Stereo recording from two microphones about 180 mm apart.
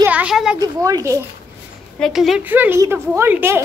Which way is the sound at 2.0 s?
Centre (ahead or behind).